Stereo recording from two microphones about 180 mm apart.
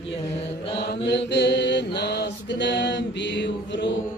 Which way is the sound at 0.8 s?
70° left (ahead or behind).